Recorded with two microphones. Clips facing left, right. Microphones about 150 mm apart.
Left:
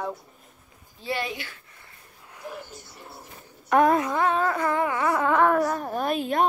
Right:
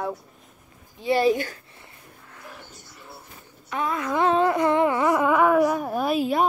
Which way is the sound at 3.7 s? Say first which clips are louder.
Left 9 dB; 50° left (ahead or behind).